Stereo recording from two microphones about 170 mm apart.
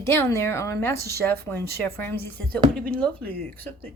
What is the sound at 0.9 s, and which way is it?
Speech, 70° right (ahead or behind).